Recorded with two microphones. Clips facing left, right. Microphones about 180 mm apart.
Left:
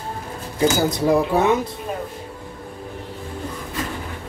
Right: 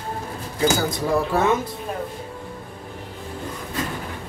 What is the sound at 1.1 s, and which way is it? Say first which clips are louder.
Speech: left 1 dB; 15° left (ahead or behind).